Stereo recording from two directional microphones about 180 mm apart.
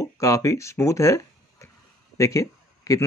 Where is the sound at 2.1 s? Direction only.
20° left (ahead or behind).